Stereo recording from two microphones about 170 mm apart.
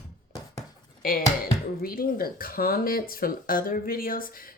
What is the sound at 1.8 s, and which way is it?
Speech, 60° left (ahead or behind).